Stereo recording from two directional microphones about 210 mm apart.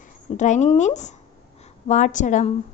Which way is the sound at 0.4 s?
35° left (ahead or behind).